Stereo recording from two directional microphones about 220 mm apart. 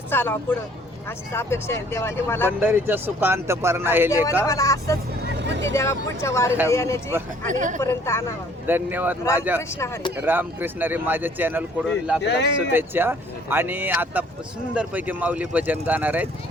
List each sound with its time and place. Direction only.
0.1 s speech: 10° left (ahead or behind)
2.5 s speech: 10° right (ahead or behind)
4.4 s speech: 15° left (ahead or behind)
5.4 s vehicle: 55° right (ahead or behind)
5.7 s speech: 10° left (ahead or behind)
7.5 s a woman's voice: 35° right (ahead or behind)
7.8 s speech: 10° left (ahead or behind)
8.6 s speech: 10° right (ahead or behind)
9.6 s speech: 15° left (ahead or behind)
10.2 s speech: 10° right (ahead or behind)
12.2 s speech: 50° left (ahead or behind)
12.7 s speech: 10° right (ahead or behind)